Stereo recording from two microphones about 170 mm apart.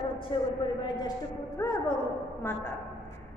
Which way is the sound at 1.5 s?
20° left (ahead or behind).